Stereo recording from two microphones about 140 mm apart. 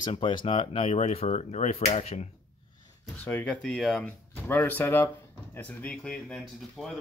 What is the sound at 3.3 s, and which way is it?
Speech, 10° left (ahead or behind).